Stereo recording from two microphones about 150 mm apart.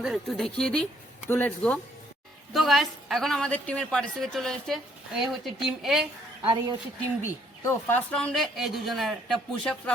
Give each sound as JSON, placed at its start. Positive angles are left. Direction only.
{"t": 0.0, "sound": "a woman's voice", "side_deg": 0}
{"t": 6.4, "sound": "speech", "side_deg": -35}
{"t": 7.6, "sound": "speech", "side_deg": 20}
{"t": 8.1, "sound": "a woman's voice", "side_deg": 5}